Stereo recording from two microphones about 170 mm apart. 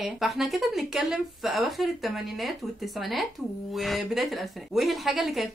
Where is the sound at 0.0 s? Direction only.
Centre (ahead or behind).